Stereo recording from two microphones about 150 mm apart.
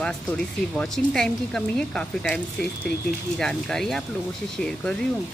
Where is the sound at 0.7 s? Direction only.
5° left (ahead or behind).